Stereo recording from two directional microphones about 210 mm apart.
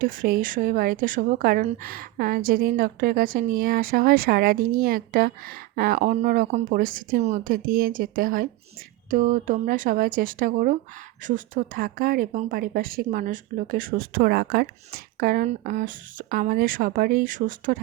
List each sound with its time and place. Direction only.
0.0 s a woman's voice: 40° right (ahead or behind)